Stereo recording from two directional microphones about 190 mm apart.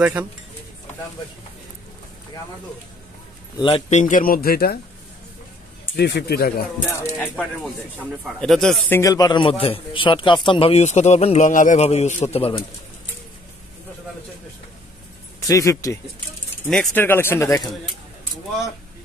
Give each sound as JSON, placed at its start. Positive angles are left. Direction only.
{"t": 0.0, "sound": "speech", "side_deg": -5}
{"t": 3.5, "sound": "speech", "side_deg": 30}
{"t": 4.0, "sound": "a man's voice", "side_deg": 45}
{"t": 5.9, "sound": "speech", "side_deg": 60}
{"t": 6.9, "sound": "speech", "side_deg": 15}
{"t": 7.2, "sound": "speech", "side_deg": 0}
{"t": 8.9, "sound": "a man's voice", "side_deg": 15}
{"t": 15.4, "sound": "speech", "side_deg": 15}